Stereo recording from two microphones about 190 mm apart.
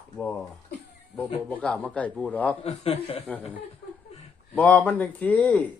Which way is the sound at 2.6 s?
30° left (ahead or behind).